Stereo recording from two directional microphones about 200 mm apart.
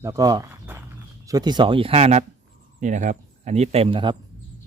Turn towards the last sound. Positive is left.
turn(degrees=-25)  # may be behind; listen again after turning